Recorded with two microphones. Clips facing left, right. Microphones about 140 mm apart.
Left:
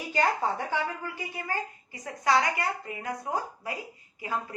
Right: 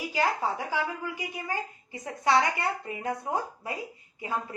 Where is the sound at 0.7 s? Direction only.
15° right (ahead or behind).